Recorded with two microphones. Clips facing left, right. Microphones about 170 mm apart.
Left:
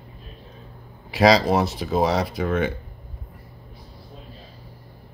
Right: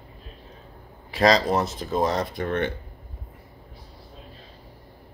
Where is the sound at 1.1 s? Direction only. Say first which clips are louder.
Left 3 dB; 5° left (ahead or behind).